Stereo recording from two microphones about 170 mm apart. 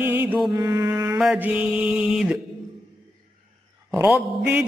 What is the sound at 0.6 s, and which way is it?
Mantra, 20° right (ahead or behind).